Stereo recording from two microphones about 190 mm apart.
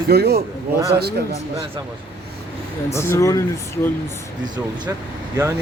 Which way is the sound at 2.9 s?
15° left (ahead or behind).